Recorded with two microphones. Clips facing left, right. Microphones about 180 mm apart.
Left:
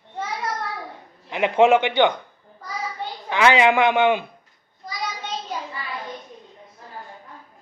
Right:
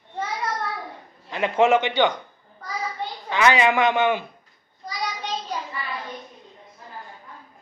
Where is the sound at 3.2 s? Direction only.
15° left (ahead or behind).